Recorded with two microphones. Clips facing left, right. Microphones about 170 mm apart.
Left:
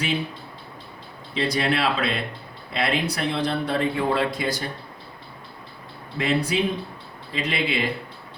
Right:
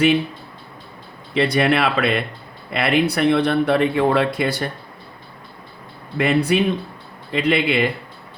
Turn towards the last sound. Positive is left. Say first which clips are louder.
# right 7 dB
turn(degrees=-65)  # may be behind; listen again after turning